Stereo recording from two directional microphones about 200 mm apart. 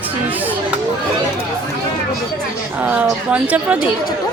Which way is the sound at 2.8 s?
5° right (ahead or behind).